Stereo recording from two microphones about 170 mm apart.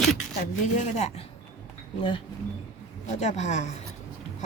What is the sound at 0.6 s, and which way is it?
Speech, 45° left (ahead or behind).